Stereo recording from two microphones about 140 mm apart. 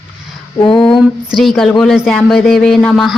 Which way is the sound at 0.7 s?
5° left (ahead or behind).